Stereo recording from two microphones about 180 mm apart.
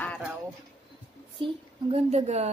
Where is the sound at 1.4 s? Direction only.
35° right (ahead or behind).